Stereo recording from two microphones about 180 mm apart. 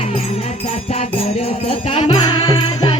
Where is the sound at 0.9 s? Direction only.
35° left (ahead or behind).